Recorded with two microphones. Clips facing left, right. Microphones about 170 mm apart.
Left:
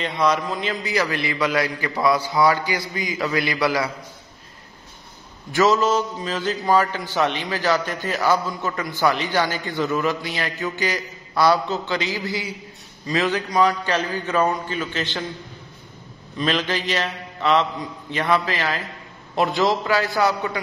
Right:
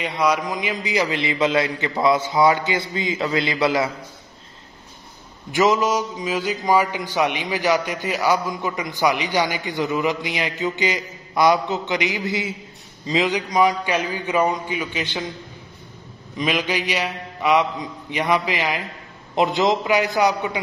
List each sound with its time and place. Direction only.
0.0 s a man's voice: 10° right (ahead or behind)
5.5 s a man's voice: 15° right (ahead or behind)
16.3 s a man's voice: 10° right (ahead or behind)